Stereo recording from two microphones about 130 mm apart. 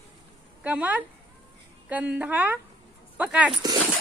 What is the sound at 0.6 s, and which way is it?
A woman's voice, 10° right (ahead or behind).